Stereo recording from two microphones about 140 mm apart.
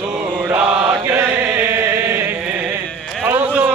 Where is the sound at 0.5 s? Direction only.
15° right (ahead or behind).